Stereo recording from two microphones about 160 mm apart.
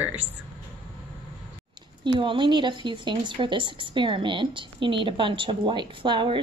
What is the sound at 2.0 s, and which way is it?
Speech, 30° right (ahead or behind).